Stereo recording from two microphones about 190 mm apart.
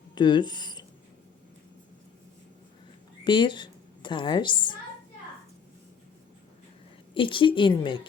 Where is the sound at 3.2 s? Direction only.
25° left (ahead or behind).